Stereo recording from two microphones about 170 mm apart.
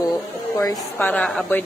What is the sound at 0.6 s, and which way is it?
Speech, 20° left (ahead or behind).